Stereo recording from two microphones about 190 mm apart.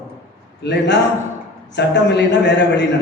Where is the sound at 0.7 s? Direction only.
65° left (ahead or behind).